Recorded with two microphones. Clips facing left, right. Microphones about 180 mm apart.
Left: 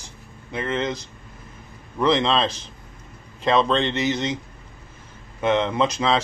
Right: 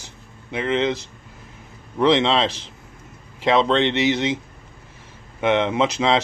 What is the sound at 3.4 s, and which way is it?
Speech, 15° right (ahead or behind).